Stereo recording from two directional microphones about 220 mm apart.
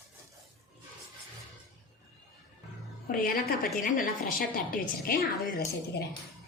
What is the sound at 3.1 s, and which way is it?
A woman's voice, 40° left (ahead or behind).